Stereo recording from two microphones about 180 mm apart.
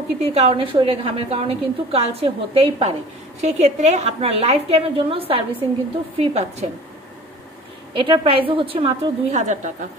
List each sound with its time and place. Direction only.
0.2 s a woman's voice: 35° right (ahead or behind)
7.9 s a woman's voice: 30° right (ahead or behind)